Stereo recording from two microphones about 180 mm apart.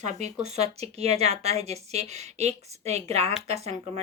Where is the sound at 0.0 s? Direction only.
40° right (ahead or behind).